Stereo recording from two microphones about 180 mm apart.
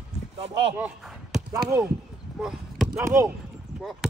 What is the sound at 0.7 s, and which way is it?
Speech, 5° right (ahead or behind).